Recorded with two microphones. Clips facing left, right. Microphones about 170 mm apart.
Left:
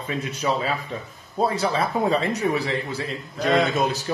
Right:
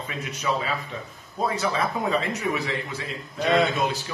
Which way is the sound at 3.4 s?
Centre (ahead or behind).